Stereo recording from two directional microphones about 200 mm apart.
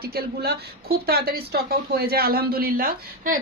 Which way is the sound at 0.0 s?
50° right (ahead or behind).